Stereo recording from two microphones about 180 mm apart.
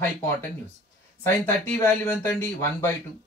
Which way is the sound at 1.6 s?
10° left (ahead or behind).